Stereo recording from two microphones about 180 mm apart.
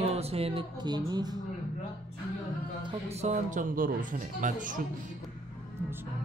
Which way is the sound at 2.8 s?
30° right (ahead or behind).